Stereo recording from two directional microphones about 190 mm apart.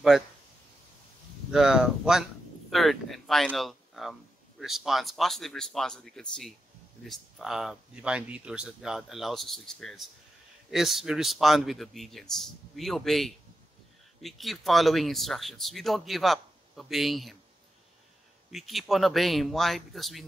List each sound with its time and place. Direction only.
1.5 s speech: 5° right (ahead or behind)
18.5 s speech: centre (ahead or behind)